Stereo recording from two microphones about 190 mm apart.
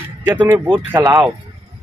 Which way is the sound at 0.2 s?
10° right (ahead or behind).